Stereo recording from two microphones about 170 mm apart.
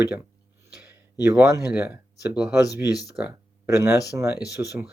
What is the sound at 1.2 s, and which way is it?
Speech, 15° right (ahead or behind).